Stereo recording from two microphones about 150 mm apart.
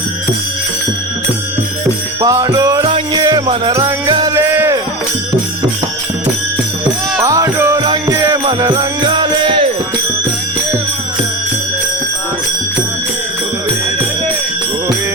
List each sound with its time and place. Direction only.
2.2 s jingle bell: 20° right (ahead or behind)
3.2 s music: 25° right (ahead or behind)
7.2 s music: 20° right (ahead or behind)